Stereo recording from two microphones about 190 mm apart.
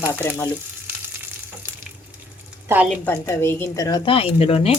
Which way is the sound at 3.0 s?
10° left (ahead or behind).